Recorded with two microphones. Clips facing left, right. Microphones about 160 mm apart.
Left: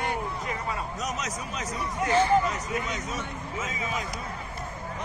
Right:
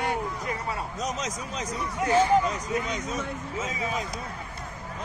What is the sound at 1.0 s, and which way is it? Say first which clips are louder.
Speech: right 1 dB; 30° right (ahead or behind).